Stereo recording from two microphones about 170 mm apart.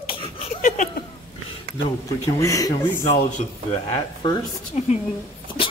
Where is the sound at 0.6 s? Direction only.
50° left (ahead or behind).